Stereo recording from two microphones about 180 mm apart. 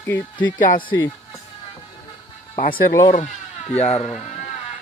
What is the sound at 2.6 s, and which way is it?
Speech, 55° left (ahead or behind).